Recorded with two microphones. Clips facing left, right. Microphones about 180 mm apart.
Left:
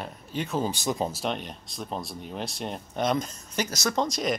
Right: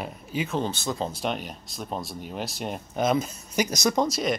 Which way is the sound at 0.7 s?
15° left (ahead or behind).